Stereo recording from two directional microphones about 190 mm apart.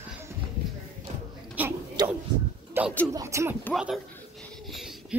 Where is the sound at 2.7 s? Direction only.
10° right (ahead or behind).